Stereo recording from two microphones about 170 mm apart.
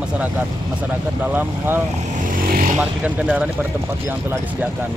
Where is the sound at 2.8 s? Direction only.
5° right (ahead or behind).